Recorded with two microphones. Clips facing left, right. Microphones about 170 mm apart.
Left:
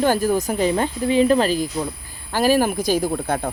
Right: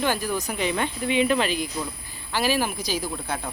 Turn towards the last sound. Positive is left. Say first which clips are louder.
# left 8 dB
turn(degrees=50)  # may be behind; listen again after turning